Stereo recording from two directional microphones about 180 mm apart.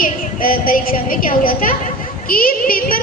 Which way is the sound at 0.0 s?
50° left (ahead or behind).